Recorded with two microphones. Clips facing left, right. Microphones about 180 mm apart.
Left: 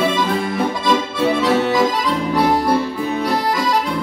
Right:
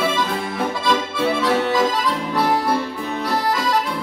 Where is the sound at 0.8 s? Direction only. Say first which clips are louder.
Left 2 dB; 15° left (ahead or behind).